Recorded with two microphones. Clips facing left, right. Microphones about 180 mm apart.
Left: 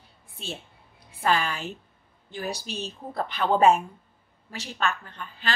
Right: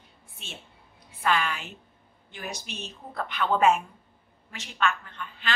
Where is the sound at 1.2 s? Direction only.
35° left (ahead or behind).